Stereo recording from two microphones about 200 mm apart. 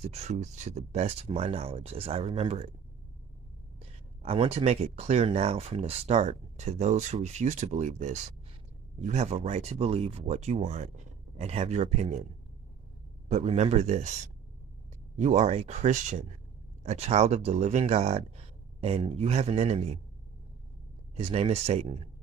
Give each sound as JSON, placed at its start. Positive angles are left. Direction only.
{"t": 0.0, "sound": "speech", "side_deg": -35}
{"t": 3.8, "sound": "speech", "side_deg": -30}
{"t": 21.2, "sound": "speech", "side_deg": -30}